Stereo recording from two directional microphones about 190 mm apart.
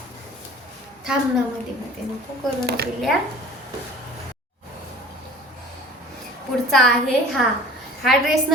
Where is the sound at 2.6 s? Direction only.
55° right (ahead or behind).